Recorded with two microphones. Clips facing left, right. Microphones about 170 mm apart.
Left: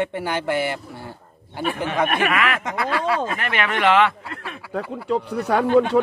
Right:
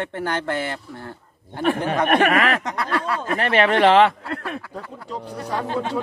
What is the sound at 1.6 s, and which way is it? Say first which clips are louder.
Speech: right 2 dB; 45° right (ahead or behind).